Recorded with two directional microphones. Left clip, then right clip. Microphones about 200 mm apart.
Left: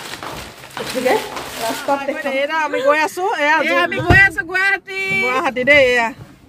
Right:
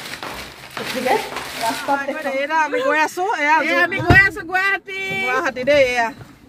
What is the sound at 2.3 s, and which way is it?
Speech, 20° left (ahead or behind).